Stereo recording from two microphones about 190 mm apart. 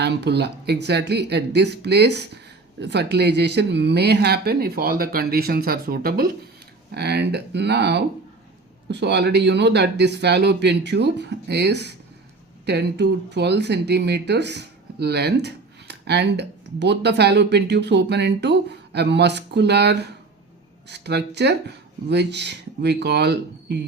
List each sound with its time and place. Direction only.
0.0 s speech: 65° right (ahead or behind)